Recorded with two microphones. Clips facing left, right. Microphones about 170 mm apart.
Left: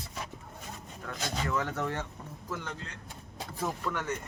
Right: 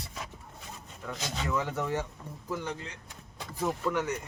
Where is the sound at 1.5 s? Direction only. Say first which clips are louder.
Right 4 dB; 10° right (ahead or behind).